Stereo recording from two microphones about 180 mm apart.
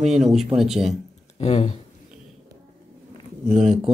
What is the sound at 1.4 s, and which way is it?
Speech, 40° left (ahead or behind).